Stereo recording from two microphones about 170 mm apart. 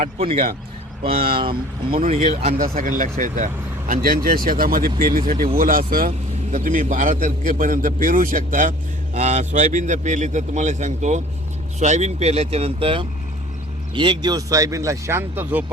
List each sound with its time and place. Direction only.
0.2 s speech: 30° right (ahead or behind)
1.9 s speech: 35° right (ahead or behind)
2.7 s a man's voice: 50° right (ahead or behind); by 15.6 s 15° right (ahead or behind)